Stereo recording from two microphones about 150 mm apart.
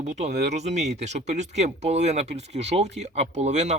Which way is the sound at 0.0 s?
50° right (ahead or behind).